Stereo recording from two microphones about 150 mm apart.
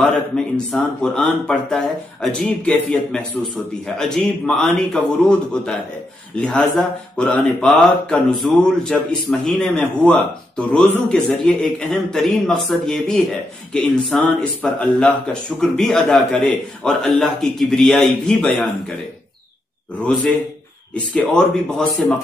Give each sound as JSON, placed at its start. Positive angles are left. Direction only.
{"t": 0.7, "sound": "speech", "side_deg": 5}
{"t": 20.1, "sound": "speech", "side_deg": 10}
{"t": 22.0, "sound": "speech", "side_deg": 0}